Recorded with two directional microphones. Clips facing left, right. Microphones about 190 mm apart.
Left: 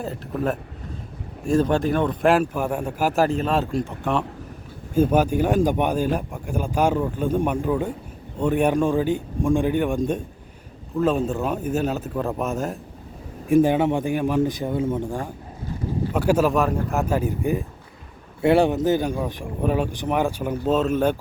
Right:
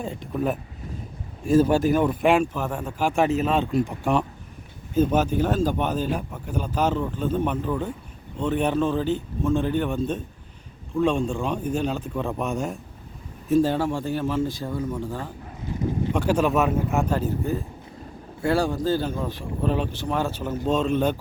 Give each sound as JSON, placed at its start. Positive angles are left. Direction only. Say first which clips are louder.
{"t": 0.0, "sound": "a man's voice", "louder": "left 1 dB", "side_deg": 0}
{"t": 4.9, "sound": "a man's voice", "louder": "left 2 dB", "side_deg": 10}
{"t": 13.5, "sound": "speech", "louder": "left 3 dB", "side_deg": 15}